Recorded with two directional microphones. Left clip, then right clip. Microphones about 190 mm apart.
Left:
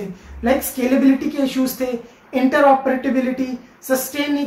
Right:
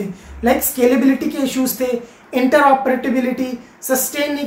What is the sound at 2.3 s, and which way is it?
Speech, 20° right (ahead or behind).